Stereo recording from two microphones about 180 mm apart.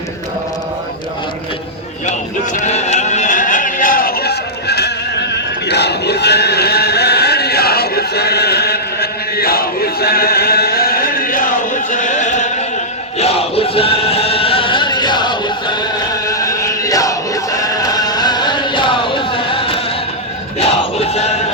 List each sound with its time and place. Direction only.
2.0 s music: 40° left (ahead or behind)
20.6 s crowd: 35° left (ahead or behind)